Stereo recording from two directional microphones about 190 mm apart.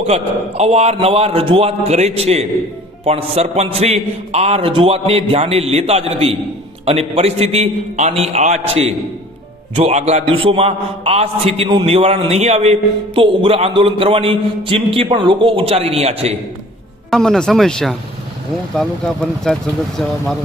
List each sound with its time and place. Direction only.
0.0 s a man's voice: 35° right (ahead or behind)
17.1 s speech: 5° left (ahead or behind)